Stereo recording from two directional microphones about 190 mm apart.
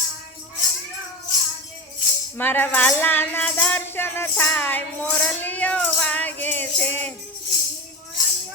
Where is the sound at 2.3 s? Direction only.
10° left (ahead or behind).